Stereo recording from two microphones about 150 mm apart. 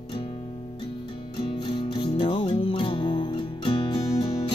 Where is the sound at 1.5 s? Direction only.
35° left (ahead or behind).